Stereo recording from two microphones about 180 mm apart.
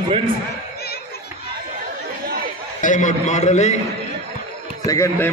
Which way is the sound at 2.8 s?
45° left (ahead or behind).